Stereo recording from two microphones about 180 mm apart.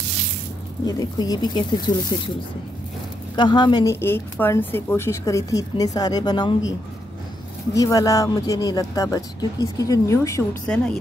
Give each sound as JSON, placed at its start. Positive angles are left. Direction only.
{"t": 0.8, "sound": "speech", "side_deg": 20}
{"t": 3.3, "sound": "a woman's voice", "side_deg": 25}
{"t": 7.7, "sound": "speech", "side_deg": 20}
{"t": 10.7, "sound": "a woman's voice", "side_deg": 5}